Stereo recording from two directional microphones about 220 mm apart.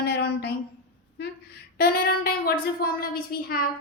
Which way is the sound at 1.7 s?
45° left (ahead or behind).